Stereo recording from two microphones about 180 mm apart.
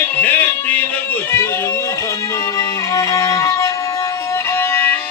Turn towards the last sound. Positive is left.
turn(degrees=10)  # may be behind; listen again after turning